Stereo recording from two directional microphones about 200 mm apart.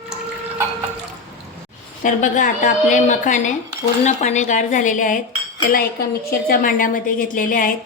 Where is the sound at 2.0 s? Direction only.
40° left (ahead or behind).